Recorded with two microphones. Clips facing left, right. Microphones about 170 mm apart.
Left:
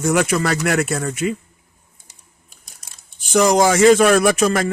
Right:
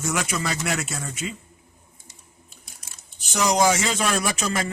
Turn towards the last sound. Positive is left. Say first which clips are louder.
# left 10 dB
turn(degrees=55)  # may be behind; listen again after turning